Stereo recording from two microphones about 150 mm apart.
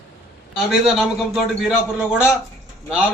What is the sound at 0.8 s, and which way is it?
Speech, centre (ahead or behind).